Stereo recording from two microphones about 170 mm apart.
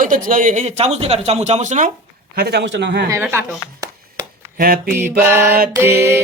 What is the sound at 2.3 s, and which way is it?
Speech, 70° right (ahead or behind).